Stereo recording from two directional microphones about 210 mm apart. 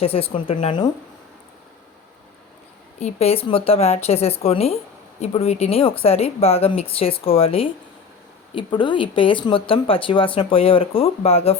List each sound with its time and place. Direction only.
0.0 s speech: 30° left (ahead or behind)
3.0 s speech: 30° left (ahead or behind)